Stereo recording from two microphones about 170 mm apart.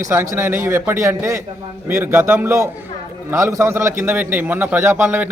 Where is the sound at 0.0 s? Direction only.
15° right (ahead or behind).